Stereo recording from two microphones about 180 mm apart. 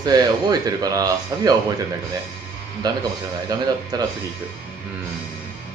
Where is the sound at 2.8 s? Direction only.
20° right (ahead or behind).